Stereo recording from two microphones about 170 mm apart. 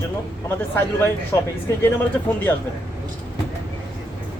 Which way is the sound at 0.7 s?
15° left (ahead or behind).